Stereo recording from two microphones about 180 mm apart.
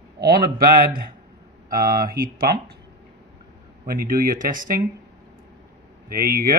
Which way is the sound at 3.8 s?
55° right (ahead or behind).